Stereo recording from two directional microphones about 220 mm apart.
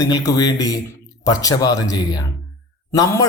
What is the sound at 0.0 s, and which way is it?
A man's voice, 15° left (ahead or behind).